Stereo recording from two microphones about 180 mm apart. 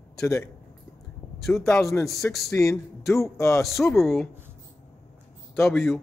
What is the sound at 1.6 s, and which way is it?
Speech, 15° left (ahead or behind).